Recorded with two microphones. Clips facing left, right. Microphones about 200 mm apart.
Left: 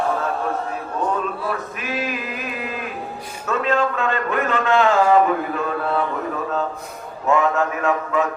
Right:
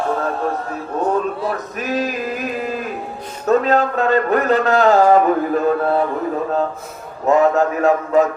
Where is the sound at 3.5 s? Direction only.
40° right (ahead or behind).